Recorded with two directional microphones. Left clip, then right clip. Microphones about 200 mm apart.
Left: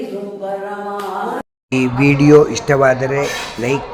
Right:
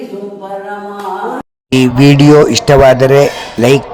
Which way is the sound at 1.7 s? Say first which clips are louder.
Right 6 dB; 25° right (ahead or behind).